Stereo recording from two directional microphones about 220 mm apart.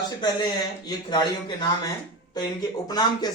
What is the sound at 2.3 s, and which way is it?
Speech, 20° left (ahead or behind).